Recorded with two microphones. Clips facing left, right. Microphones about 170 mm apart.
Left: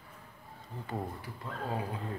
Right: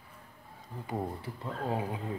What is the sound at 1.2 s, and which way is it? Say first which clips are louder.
Speech: right 3 dB; 20° right (ahead or behind).